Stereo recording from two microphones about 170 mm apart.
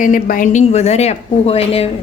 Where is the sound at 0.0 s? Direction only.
55° left (ahead or behind).